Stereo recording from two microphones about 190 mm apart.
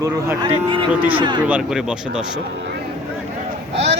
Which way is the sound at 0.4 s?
25° right (ahead or behind).